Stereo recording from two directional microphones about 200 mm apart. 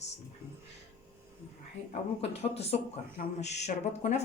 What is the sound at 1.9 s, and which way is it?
Speech, 30° left (ahead or behind).